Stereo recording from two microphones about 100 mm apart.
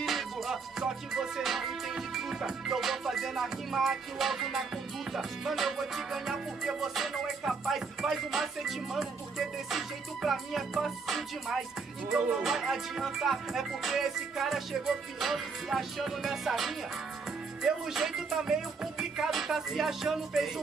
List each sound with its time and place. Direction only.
0.0 s music: centre (ahead or behind)